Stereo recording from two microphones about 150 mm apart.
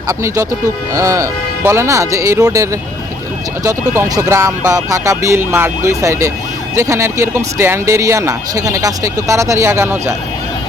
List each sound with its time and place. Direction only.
0.1 s speech: 20° right (ahead or behind)
3.9 s speech: 20° right (ahead or behind)